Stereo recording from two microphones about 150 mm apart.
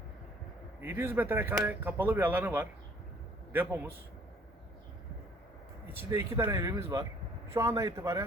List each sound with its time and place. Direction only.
0.8 s speech: 15° right (ahead or behind)
5.9 s speech: 20° right (ahead or behind)